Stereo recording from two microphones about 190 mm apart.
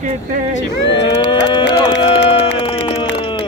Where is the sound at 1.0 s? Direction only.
25° left (ahead or behind).